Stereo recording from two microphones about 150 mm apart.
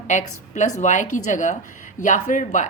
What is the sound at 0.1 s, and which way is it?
A woman's voice, 55° left (ahead or behind).